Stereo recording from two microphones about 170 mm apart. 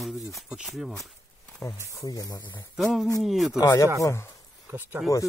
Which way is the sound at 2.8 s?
Centre (ahead or behind).